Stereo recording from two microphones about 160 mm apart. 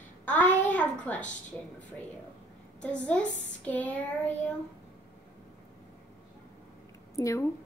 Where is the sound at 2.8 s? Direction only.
5° left (ahead or behind).